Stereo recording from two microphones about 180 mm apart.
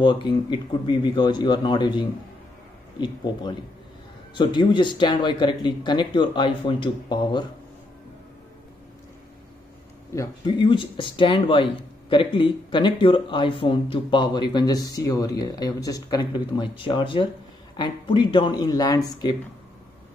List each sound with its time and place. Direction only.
0.0 s speech: 25° left (ahead or behind)
4.4 s speech: 25° left (ahead or behind)
10.1 s speech: 20° left (ahead or behind)